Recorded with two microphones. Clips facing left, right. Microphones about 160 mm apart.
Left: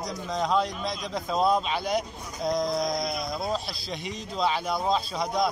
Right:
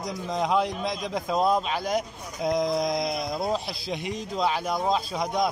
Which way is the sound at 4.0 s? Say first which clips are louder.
Right 4 dB; 55° right (ahead or behind).